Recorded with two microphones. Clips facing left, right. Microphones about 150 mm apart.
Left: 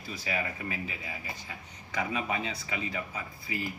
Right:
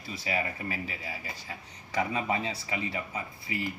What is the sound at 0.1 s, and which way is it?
Speech, 30° right (ahead or behind).